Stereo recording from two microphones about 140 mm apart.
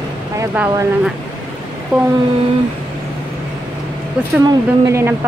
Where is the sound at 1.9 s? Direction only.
5° right (ahead or behind).